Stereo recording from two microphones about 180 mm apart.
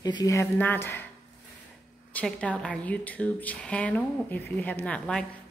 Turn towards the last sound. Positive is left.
turn(degrees=5)  # may be behind; listen again after turning